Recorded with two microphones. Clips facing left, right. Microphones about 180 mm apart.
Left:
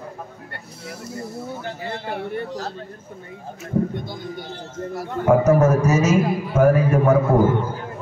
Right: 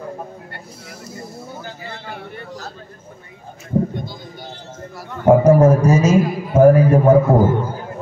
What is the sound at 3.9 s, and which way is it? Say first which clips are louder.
Speech: left 1 dB; 55° left (ahead or behind).